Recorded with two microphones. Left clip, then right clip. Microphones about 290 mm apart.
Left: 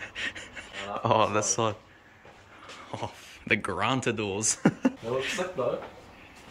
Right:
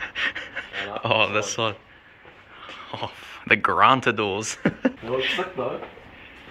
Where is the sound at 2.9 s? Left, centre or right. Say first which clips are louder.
Right 4 dB; centre.